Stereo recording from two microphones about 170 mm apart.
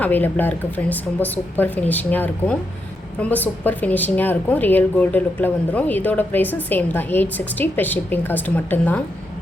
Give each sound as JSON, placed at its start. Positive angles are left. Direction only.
{"t": 0.0, "sound": "a woman's voice", "side_deg": 10}